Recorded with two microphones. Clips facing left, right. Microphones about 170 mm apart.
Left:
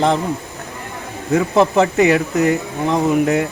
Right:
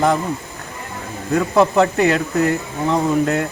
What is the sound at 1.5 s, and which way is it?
Speech, 20° left (ahead or behind).